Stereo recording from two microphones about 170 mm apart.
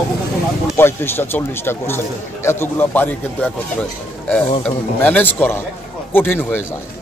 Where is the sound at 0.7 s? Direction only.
15° left (ahead or behind).